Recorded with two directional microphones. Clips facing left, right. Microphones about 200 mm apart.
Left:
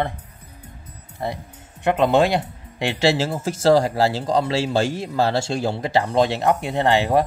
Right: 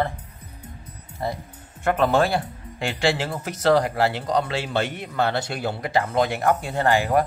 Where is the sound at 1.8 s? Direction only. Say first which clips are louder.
Left 3 dB; 15° left (ahead or behind).